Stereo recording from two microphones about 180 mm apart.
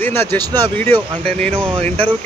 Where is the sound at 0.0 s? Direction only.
10° left (ahead or behind).